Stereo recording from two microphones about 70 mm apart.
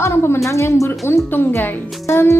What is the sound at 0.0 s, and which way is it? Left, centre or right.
A woman's voice, left.